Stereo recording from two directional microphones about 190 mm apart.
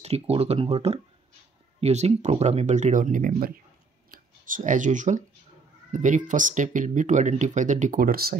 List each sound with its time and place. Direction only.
0.0 s speech: 30° right (ahead or behind); by 8.4 s 50° right (ahead or behind)